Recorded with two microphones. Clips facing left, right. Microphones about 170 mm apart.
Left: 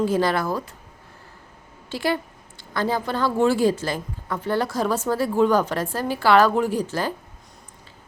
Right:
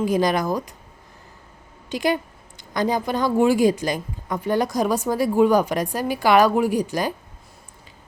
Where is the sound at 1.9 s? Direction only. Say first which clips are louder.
Right 2 dB; 15° right (ahead or behind).